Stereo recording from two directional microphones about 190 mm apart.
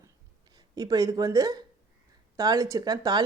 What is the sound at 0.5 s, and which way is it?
Speech, 20° right (ahead or behind).